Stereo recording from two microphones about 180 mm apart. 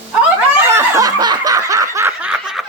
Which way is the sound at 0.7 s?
20° right (ahead or behind).